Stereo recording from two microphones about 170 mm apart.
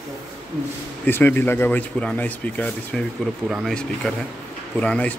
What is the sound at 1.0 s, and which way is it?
A man's voice, 10° left (ahead or behind).